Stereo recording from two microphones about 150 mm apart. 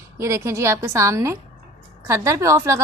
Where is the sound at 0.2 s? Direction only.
20° right (ahead or behind).